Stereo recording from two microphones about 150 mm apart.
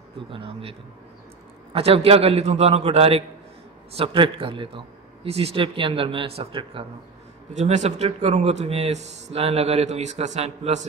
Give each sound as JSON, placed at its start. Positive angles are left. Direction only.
{"t": 0.3, "sound": "a man's voice", "side_deg": -40}
{"t": 7.5, "sound": "speech", "side_deg": -50}